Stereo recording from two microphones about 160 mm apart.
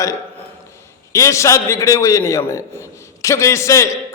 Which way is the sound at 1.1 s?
20° left (ahead or behind).